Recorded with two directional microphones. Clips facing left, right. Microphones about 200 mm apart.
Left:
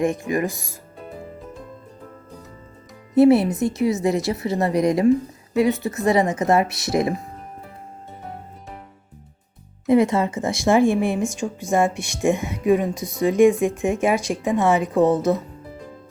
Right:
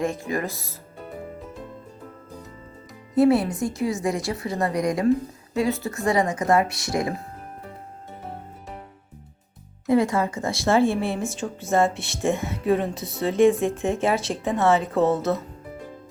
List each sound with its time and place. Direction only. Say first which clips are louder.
0.0 s speech: left 4 dB; 15° left (ahead or behind)
3.2 s a woman's voice: left 4 dB; 25° left (ahead or behind)
9.8 s speech: left 3 dB; 20° left (ahead or behind)